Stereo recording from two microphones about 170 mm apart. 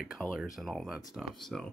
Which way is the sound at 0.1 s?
5° right (ahead or behind).